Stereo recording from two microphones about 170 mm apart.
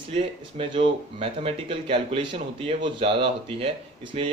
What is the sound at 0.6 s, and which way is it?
Speech, 35° right (ahead or behind).